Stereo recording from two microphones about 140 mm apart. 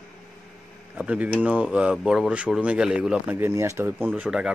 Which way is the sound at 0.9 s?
10° right (ahead or behind).